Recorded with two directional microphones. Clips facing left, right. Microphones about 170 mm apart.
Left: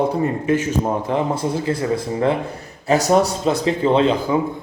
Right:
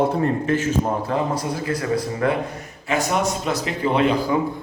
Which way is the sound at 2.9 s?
35° left (ahead or behind).